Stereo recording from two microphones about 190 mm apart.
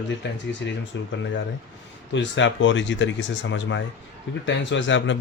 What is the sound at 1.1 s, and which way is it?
Speech, 70° left (ahead or behind).